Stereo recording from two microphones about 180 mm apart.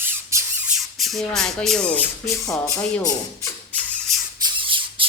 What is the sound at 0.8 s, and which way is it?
Speech, centre (ahead or behind).